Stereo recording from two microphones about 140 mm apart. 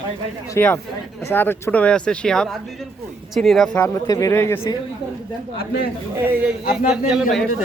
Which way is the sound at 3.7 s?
20° left (ahead or behind).